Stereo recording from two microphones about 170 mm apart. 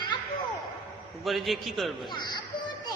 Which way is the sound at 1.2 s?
Centre (ahead or behind).